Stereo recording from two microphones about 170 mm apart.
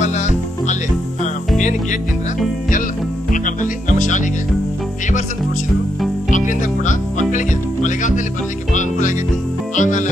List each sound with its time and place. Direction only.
0.0 s music: 45° left (ahead or behind)
3.4 s music: 50° left (ahead or behind)
6.3 s music: 45° left (ahead or behind)
9.8 s music: 45° left (ahead or behind)